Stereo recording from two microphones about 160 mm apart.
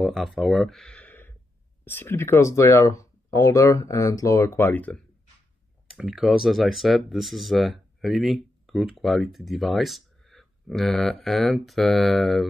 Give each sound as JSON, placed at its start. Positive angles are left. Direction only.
{"t": 0.0, "sound": "speech", "side_deg": 0}
{"t": 5.9, "sound": "speech", "side_deg": 0}